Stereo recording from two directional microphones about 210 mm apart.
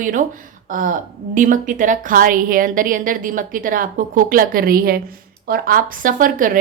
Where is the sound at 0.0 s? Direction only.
40° right (ahead or behind).